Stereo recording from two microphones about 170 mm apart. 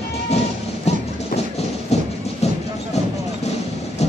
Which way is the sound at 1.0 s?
40° left (ahead or behind).